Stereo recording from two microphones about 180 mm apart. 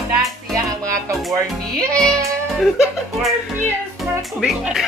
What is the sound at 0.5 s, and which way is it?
Music, 20° right (ahead or behind).